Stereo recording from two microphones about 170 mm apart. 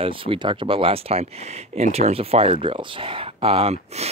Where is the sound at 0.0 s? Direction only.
30° right (ahead or behind).